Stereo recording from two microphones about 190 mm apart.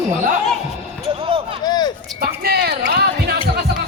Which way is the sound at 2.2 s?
55° right (ahead or behind).